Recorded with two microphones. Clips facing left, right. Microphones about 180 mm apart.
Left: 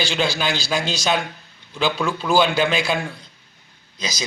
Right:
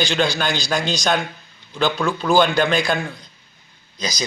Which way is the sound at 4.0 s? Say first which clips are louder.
Right 3 dB; 5° left (ahead or behind).